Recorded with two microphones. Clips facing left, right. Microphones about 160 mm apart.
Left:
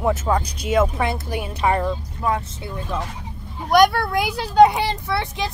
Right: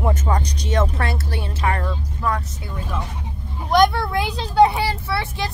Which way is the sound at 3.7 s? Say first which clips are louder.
Left 1 dB; 10° left (ahead or behind).